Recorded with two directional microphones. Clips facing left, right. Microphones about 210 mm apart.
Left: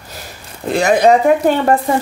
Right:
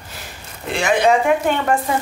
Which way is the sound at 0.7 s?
40° left (ahead or behind).